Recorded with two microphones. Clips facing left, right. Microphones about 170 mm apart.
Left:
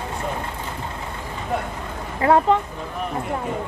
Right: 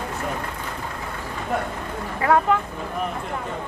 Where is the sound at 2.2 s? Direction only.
25° left (ahead or behind).